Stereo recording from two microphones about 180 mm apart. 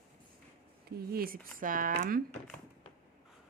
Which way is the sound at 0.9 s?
55° right (ahead or behind).